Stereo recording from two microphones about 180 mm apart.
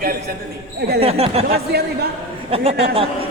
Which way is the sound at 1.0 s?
35° right (ahead or behind).